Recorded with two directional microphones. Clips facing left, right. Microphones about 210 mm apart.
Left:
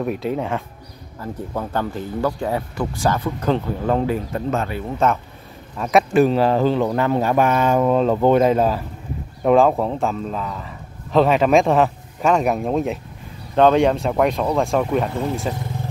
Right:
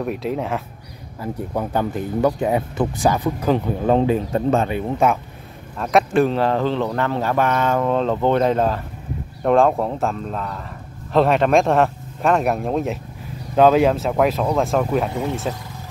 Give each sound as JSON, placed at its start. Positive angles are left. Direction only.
{"t": 0.0, "sound": "a man's voice", "side_deg": 0}
{"t": 1.2, "sound": "speech", "side_deg": -15}
{"t": 5.8, "sound": "a man's voice", "side_deg": 0}